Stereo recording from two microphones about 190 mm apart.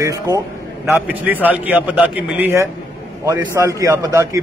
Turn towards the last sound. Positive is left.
turn(degrees=-15)  # may be behind; listen again after turning